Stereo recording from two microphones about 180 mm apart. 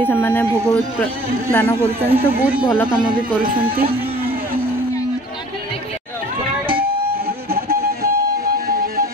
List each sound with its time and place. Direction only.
0.0 s speech: 10° left (ahead or behind)
2.0 s speech: 30° right (ahead or behind)
2.2 s speech: 10° right (ahead or behind)
7.4 s music: 60° right (ahead or behind)